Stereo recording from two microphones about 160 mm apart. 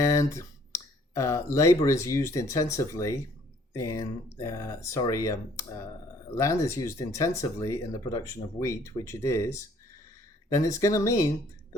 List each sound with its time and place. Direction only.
0.1 s speech: 20° left (ahead or behind)